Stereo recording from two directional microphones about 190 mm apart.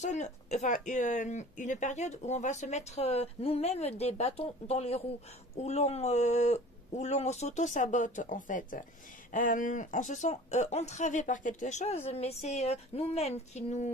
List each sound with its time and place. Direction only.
0.0 s speech: 40° left (ahead or behind)